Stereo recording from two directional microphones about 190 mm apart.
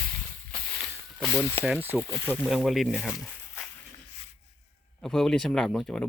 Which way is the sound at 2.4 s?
Centre (ahead or behind).